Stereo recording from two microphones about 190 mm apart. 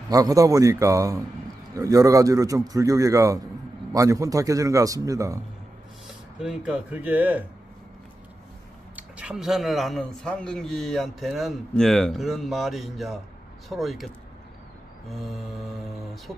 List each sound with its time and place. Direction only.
0.1 s a man's voice: 20° right (ahead or behind)
6.0 s speech: 5° right (ahead or behind)
8.9 s a man's voice: 5° right (ahead or behind)